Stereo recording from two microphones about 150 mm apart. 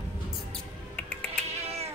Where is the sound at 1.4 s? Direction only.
45° right (ahead or behind).